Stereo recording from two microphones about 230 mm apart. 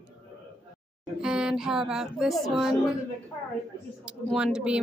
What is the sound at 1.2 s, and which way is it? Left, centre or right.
Speech, centre.